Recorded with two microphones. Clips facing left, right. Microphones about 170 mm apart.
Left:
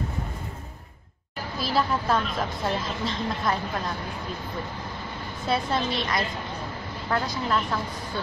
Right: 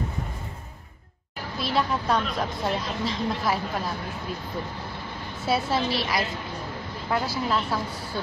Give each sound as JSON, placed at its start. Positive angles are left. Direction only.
{"t": 1.6, "sound": "a woman's voice", "side_deg": 0}
{"t": 5.4, "sound": "a woman's voice", "side_deg": -5}